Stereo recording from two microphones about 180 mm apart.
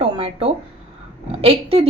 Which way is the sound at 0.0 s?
30° right (ahead or behind).